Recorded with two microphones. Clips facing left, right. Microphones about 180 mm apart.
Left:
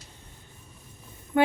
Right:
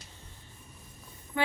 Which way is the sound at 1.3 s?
55° left (ahead or behind).